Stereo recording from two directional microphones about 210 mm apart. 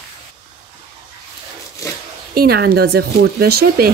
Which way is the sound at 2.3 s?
50° right (ahead or behind).